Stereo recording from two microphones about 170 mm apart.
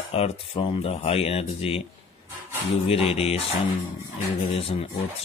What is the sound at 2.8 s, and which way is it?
Speech, 35° left (ahead or behind).